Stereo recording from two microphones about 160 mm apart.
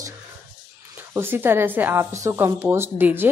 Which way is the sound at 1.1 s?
15° right (ahead or behind).